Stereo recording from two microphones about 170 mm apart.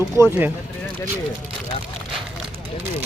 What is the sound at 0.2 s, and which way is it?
Speech, 10° right (ahead or behind).